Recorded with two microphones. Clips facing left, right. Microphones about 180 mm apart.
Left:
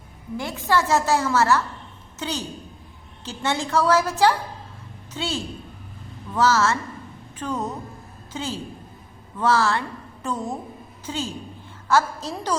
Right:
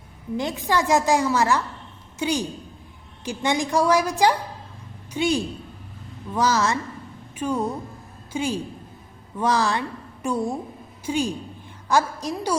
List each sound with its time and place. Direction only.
0.3 s a woman's voice: 15° right (ahead or behind)